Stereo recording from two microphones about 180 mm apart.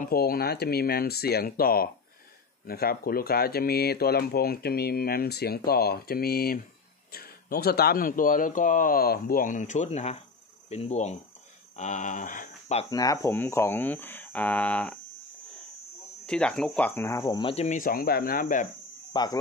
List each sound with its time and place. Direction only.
0.0 s speech: 55° left (ahead or behind)
12.9 s speech: 20° left (ahead or behind)
16.3 s speech: 5° left (ahead or behind); by 17.6 s 30° left (ahead or behind)
17.6 s speech: 50° left (ahead or behind)
19.1 s speech: 25° left (ahead or behind)